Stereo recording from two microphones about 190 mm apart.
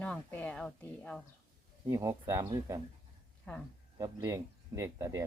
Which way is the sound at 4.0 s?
15° right (ahead or behind).